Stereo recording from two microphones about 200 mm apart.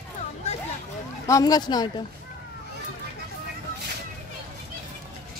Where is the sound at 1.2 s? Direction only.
15° left (ahead or behind).